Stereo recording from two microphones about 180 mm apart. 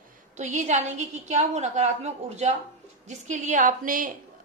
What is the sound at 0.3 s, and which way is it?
A woman's voice, 40° right (ahead or behind).